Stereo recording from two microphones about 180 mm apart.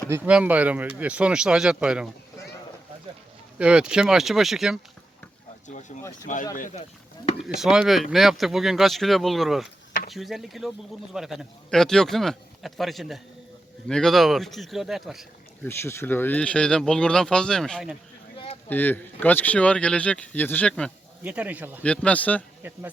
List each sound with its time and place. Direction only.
0.1 s speech: 5° right (ahead or behind)
3.6 s speech: 5° right (ahead or behind)
5.6 s speech: 40° left (ahead or behind)
7.4 s speech: 5° right (ahead or behind)
15.6 s speech: 15° left (ahead or behind)
21.2 s speech: 10° right (ahead or behind)
21.8 s speech: 5° left (ahead or behind)